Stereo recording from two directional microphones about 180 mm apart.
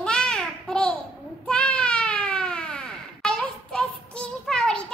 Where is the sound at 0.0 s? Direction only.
5° left (ahead or behind).